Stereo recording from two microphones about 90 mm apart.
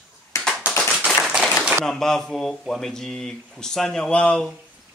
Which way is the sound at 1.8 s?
5° left (ahead or behind).